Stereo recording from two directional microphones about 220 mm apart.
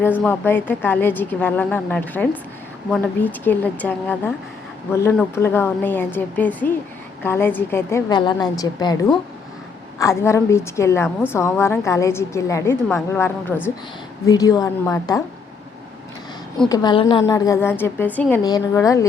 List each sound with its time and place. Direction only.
0.0 s a woman's voice: 10° left (ahead or behind)
16.6 s a woman's voice: 20° left (ahead or behind)
17.2 s a woman's voice: 15° left (ahead or behind)